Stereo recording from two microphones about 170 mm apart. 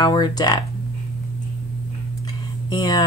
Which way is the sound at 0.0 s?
25° left (ahead or behind).